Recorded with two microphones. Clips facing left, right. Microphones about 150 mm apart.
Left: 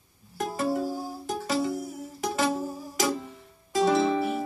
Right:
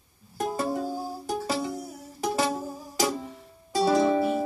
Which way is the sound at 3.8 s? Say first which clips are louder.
Right 1 dB; 35° right (ahead or behind).